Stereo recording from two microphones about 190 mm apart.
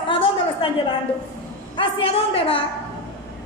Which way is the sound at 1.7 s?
30° left (ahead or behind).